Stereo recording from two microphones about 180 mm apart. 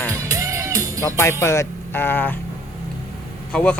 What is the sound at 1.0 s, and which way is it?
Speech, 15° left (ahead or behind).